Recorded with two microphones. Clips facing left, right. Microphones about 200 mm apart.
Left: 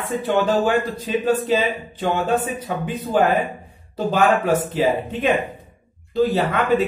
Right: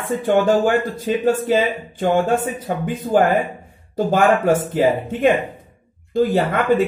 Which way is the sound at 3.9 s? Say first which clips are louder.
Right 2 dB; 50° right (ahead or behind).